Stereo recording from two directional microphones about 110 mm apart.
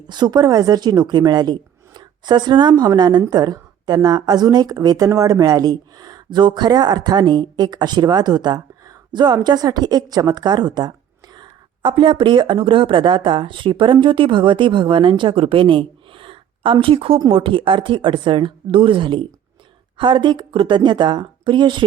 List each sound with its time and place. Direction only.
0.1 s a woman's voice: 40° right (ahead or behind)